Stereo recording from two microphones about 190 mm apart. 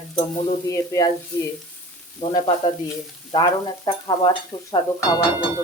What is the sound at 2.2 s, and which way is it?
Speech, 25° left (ahead or behind).